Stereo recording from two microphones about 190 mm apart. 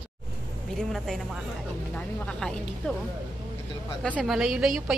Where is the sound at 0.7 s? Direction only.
Centre (ahead or behind).